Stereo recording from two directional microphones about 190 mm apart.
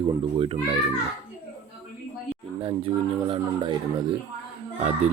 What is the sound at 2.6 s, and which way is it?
Speech, 30° right (ahead or behind).